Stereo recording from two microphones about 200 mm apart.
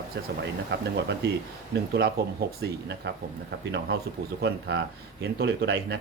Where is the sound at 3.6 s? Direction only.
60° right (ahead or behind).